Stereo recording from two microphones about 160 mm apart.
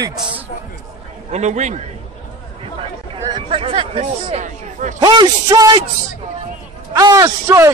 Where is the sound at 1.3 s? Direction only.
45° right (ahead or behind).